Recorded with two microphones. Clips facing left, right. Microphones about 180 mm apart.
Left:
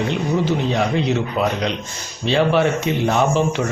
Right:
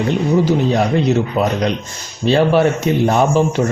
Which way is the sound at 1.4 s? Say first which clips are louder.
Right 4 dB; 40° right (ahead or behind).